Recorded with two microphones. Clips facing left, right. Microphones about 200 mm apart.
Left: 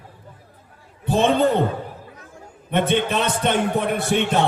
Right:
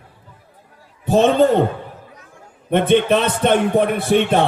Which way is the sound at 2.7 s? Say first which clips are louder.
Right 6 dB; 50° right (ahead or behind).